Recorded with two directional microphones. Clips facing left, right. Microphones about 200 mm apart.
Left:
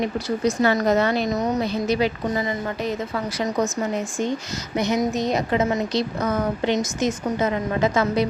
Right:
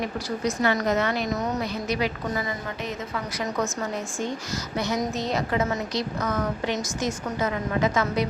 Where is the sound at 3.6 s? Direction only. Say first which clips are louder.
Left 5 dB; 20° left (ahead or behind).